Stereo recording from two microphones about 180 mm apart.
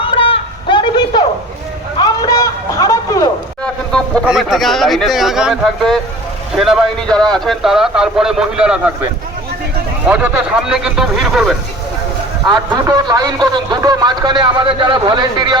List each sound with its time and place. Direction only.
0.0 s a sound: 30° left (ahead or behind)
3.9 s a man's voice: centre (ahead or behind)
10.1 s a man's voice: 10° right (ahead or behind)
12.5 s a man's voice: 20° right (ahead or behind)